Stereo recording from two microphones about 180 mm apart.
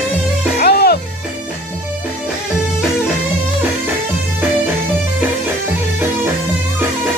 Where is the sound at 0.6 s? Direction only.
60° left (ahead or behind).